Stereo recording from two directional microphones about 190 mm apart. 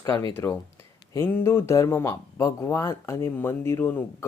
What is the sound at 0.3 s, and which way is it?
Speech, 10° left (ahead or behind).